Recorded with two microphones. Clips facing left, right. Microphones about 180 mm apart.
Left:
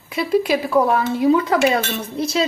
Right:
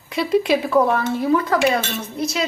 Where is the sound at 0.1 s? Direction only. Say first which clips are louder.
Even; centre (ahead or behind); by 1.5 s 20° left (ahead or behind).